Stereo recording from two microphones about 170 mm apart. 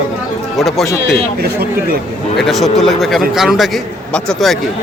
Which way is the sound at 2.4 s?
Centre (ahead or behind).